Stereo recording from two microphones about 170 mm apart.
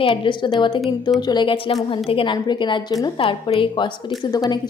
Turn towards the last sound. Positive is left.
turn(degrees=20)  # may be behind; listen again after turning